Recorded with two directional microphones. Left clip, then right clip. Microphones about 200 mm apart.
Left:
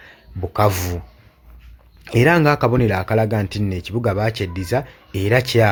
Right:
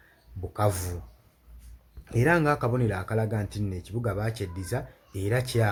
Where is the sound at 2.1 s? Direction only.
30° left (ahead or behind).